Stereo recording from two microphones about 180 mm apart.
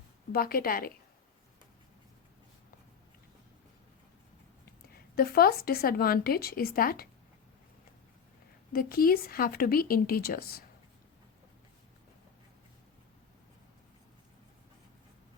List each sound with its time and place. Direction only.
0.3 s speech: 55° left (ahead or behind)
5.1 s speech: 55° left (ahead or behind)
8.7 s speech: 55° left (ahead or behind)